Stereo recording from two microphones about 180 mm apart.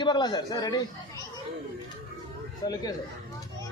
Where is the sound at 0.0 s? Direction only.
25° left (ahead or behind).